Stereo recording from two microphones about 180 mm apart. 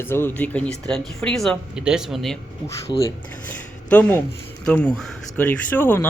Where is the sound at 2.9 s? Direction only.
25° left (ahead or behind).